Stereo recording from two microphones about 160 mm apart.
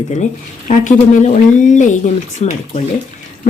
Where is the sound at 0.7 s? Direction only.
55° left (ahead or behind).